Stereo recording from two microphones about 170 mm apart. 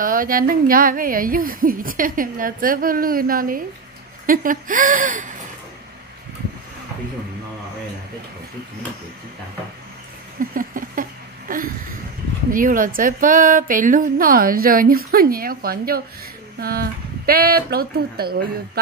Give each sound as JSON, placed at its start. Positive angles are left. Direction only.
{"t": 0.0, "sound": "a woman's voice", "side_deg": -55}
{"t": 10.5, "sound": "a sound", "side_deg": -55}
{"t": 12.4, "sound": "a woman's voice", "side_deg": -55}